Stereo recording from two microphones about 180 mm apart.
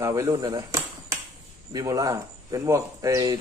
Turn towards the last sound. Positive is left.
turn(degrees=-20)  # may be behind; listen again after turning